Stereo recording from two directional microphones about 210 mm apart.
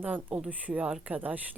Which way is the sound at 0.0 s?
10° right (ahead or behind).